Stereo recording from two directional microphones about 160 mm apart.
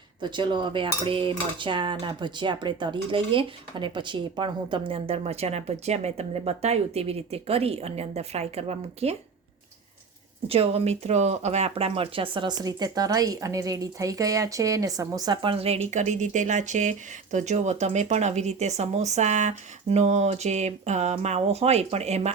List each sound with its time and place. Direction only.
0.2 s cutlery: 30° right (ahead or behind)
10.5 s cutlery: 40° right (ahead or behind)
17.3 s speech: 45° right (ahead or behind)